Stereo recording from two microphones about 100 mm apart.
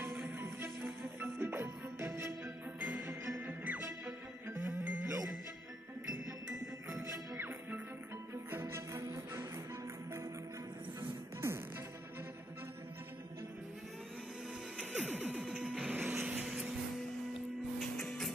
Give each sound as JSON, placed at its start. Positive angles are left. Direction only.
{"t": 0.0, "sound": "music", "side_deg": -5}
{"t": 1.2, "sound": "music", "side_deg": -20}
{"t": 2.4, "sound": "music", "side_deg": -10}
{"t": 6.9, "sound": "music", "side_deg": -30}
{"t": 14.8, "sound": "music", "side_deg": -10}
{"t": 17.9, "sound": "music", "side_deg": 5}